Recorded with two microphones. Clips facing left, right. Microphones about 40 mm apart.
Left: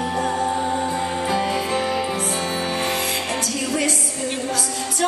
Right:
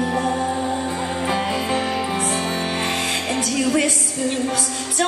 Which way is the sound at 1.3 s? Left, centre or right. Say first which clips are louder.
Right 1 dB; centre.